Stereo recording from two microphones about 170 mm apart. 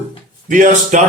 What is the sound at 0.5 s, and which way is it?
Speech, 50° right (ahead or behind).